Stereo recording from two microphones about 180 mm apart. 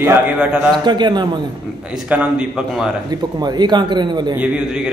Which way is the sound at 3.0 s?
20° right (ahead or behind).